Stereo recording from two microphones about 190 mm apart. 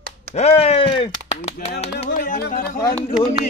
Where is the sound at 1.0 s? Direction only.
35° left (ahead or behind).